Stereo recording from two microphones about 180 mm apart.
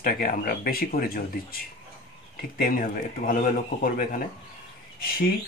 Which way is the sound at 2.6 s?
50° left (ahead or behind).